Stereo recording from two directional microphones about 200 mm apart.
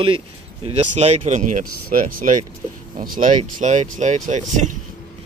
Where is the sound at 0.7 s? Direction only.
35° right (ahead or behind).